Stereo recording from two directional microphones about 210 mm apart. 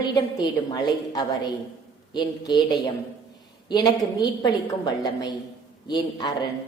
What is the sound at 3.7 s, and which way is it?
A woman's voice, 20° left (ahead or behind).